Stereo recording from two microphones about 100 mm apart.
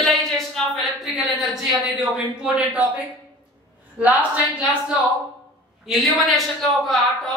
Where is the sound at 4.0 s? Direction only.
15° right (ahead or behind).